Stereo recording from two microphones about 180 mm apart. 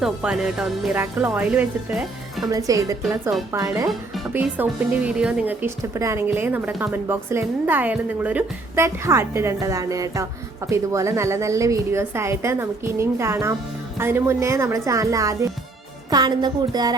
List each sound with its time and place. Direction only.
0.0 s speech: 5° right (ahead or behind)
2.5 s speech: 20° right (ahead or behind)
3.8 s speech: 5° right (ahead or behind); by 16.9 s 20° right (ahead or behind)